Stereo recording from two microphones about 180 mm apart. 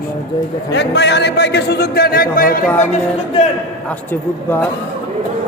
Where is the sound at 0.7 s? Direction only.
70° left (ahead or behind); by 2.6 s 55° left (ahead or behind).